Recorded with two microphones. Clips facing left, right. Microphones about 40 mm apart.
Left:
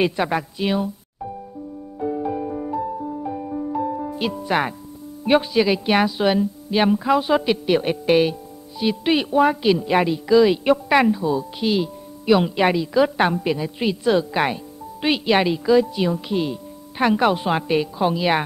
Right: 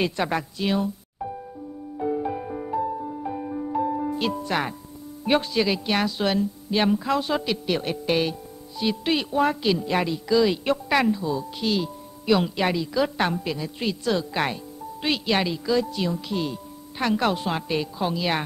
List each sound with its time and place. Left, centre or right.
0.0 s speech: centre
2.0 s music: centre
4.2 s speech: centre